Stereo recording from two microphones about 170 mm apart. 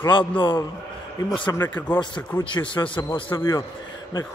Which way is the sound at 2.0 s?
25° left (ahead or behind).